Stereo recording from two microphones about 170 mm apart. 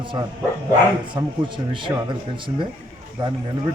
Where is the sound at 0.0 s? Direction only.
30° right (ahead or behind).